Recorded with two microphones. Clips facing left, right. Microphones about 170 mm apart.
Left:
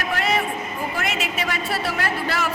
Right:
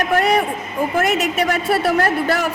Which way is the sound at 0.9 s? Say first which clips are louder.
Right 10 dB; 45° right (ahead or behind).